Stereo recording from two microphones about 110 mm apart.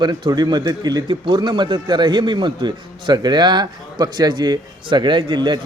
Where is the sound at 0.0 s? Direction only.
40° right (ahead or behind).